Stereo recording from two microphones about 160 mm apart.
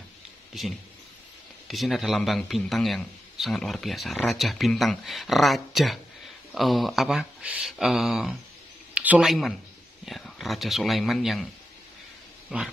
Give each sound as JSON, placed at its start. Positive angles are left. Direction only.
{"t": 1.7, "sound": "a man's voice", "side_deg": 0}
{"t": 12.5, "sound": "a man's voice", "side_deg": -5}